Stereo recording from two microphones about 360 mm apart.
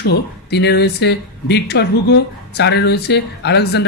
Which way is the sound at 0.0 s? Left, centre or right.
Left.